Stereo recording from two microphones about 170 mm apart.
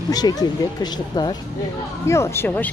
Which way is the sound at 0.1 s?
25° left (ahead or behind).